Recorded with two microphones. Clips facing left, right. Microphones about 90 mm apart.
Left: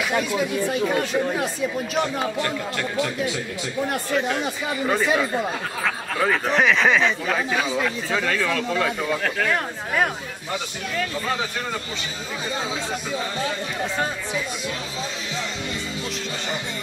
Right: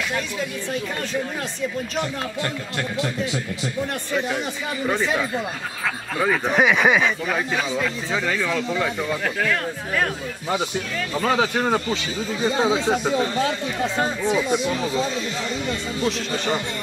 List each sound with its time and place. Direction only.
0.1 s speech: 15° left (ahead or behind)
4.8 s speech: 5° left (ahead or behind); by 8.8 s 10° right (ahead or behind)
9.4 s speech: 15° left (ahead or behind)
11.1 s speech: 65° right (ahead or behind)
12.4 s speech: 25° right (ahead or behind)
13.9 s speech: 20° right (ahead or behind)